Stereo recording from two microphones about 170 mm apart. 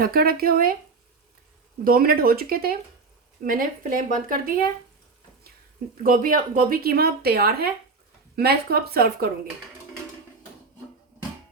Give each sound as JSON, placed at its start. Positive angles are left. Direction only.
{"t": 0.0, "sound": "speech", "side_deg": -60}
{"t": 1.8, "sound": "speech", "side_deg": -60}
{"t": 6.0, "sound": "speech", "side_deg": -55}